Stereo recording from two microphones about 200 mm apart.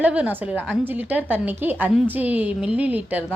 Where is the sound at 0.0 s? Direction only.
5° right (ahead or behind).